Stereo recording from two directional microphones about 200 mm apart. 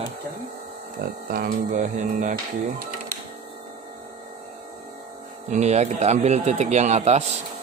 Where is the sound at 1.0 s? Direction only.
50° right (ahead or behind).